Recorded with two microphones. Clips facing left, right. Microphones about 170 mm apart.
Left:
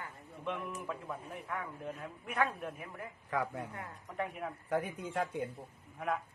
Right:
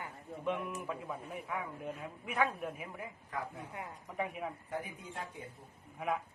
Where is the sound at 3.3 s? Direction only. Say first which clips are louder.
Left 7 dB; 80° left.